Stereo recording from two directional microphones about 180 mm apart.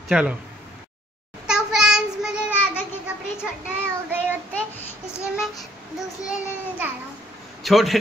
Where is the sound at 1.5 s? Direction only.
5° right (ahead or behind).